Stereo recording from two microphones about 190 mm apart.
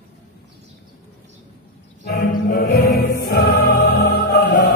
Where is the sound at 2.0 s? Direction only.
55° left (ahead or behind).